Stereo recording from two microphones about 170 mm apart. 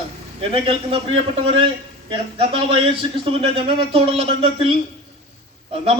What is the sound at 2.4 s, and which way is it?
A man's voice, 30° right (ahead or behind).